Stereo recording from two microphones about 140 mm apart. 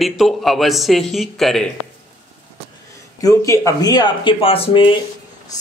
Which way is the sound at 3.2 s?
25° left (ahead or behind).